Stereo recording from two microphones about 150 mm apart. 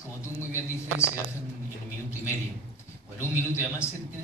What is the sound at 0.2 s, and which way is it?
Speech, 20° left (ahead or behind).